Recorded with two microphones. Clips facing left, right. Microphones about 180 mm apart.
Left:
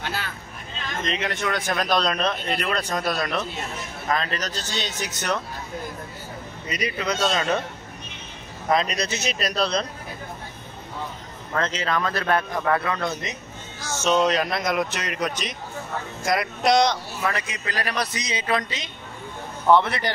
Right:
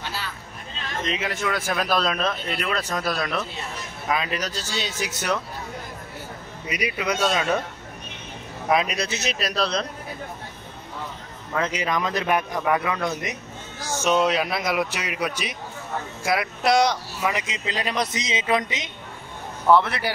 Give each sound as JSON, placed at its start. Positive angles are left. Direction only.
{"t": 0.0, "sound": "a sound", "side_deg": 55}
{"t": 1.0, "sound": "a man's voice", "side_deg": -5}
{"t": 6.7, "sound": "a man's voice", "side_deg": -10}
{"t": 8.6, "sound": "speech", "side_deg": -5}
{"t": 11.5, "sound": "a man's voice", "side_deg": -10}
{"t": 19.7, "sound": "speech", "side_deg": -5}